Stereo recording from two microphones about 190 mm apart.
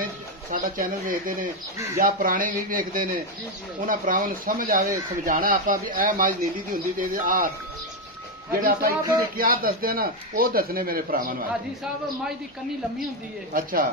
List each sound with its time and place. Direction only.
0.0 s speech: 50° right (ahead or behind)
8.5 s speech: 50° right (ahead or behind)
13.5 s speech: 50° right (ahead or behind)